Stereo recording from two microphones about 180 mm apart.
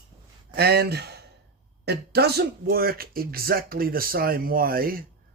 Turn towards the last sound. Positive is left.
turn(degrees=-55)  # may be behind; listen again after turning